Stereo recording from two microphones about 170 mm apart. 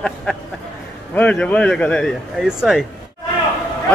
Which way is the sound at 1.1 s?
10° left (ahead or behind).